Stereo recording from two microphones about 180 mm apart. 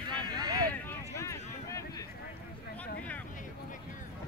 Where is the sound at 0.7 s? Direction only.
15° left (ahead or behind).